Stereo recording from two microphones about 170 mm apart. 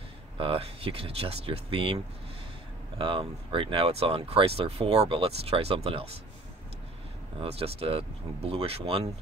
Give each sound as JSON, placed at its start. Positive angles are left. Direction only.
{"t": 0.4, "sound": "speech", "side_deg": -35}
{"t": 3.0, "sound": "speech", "side_deg": -30}
{"t": 7.3, "sound": "speech", "side_deg": -35}